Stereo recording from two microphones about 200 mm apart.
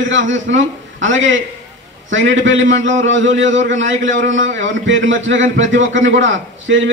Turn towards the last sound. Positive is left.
turn(degrees=-70)  # may be behind; listen again after turning